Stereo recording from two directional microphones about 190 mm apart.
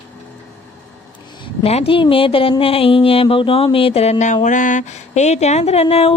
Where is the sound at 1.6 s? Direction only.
30° left (ahead or behind).